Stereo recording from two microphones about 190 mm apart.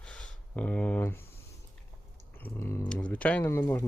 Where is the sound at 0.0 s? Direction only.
5° left (ahead or behind).